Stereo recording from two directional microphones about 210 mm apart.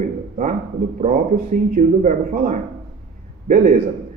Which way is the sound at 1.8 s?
35° right (ahead or behind).